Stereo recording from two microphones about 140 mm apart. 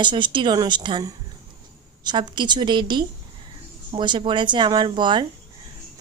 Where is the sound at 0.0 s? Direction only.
35° right (ahead or behind).